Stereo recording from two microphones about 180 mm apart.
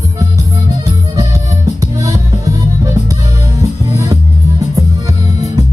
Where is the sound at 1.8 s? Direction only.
20° right (ahead or behind).